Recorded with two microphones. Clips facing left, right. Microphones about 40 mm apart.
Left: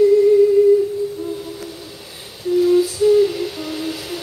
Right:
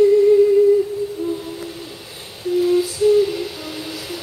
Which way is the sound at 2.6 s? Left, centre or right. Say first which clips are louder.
Left 2 dB; centre.